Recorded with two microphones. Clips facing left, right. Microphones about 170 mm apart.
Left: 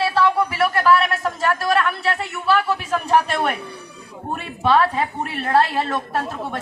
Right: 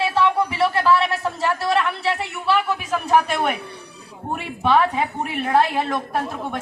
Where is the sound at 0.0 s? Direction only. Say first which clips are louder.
Left 1 dB; 20° right (ahead or behind).